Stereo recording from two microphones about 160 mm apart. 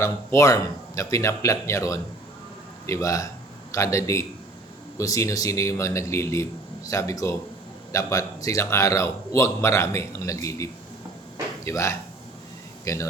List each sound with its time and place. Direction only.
0.0 s a man's voice: 20° left (ahead or behind)